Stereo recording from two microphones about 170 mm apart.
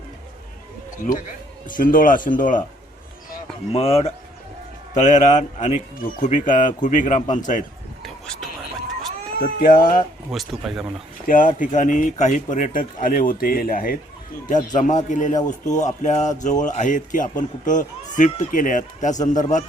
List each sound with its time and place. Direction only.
1.1 s speech: 50° left (ahead or behind)
3.7 s speech: 35° left (ahead or behind)
8.0 s a sound: centre (ahead or behind)
9.4 s speech: 55° left (ahead or behind)
10.3 s speech: centre (ahead or behind)
11.3 s speech: 50° left (ahead or behind)